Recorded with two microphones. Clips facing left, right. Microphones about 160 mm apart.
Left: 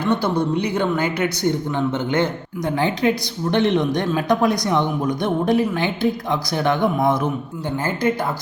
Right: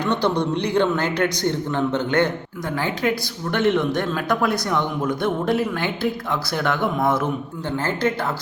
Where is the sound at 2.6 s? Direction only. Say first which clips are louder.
Left 4 dB; 20° left (ahead or behind).